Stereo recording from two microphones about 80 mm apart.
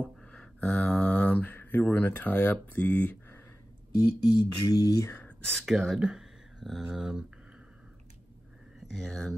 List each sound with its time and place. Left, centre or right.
0.3 s speech: centre
3.9 s a sound: left
5.7 s speech: centre
8.7 s speech: centre